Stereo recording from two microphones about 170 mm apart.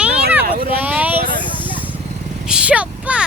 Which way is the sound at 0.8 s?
10° right (ahead or behind).